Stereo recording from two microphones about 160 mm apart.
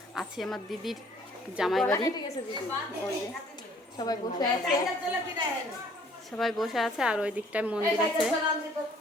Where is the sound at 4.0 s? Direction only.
25° left (ahead or behind).